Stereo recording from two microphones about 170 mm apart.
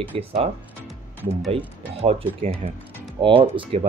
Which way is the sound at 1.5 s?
35° right (ahead or behind).